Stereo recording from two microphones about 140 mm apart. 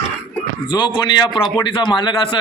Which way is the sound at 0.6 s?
35° left (ahead or behind).